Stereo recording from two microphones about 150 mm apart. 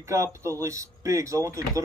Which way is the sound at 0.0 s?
20° right (ahead or behind).